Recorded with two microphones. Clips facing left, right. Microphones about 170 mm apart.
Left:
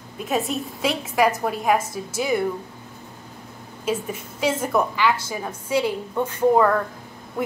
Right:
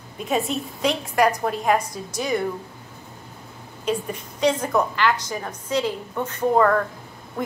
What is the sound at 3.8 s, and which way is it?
A woman's voice, 5° left (ahead or behind).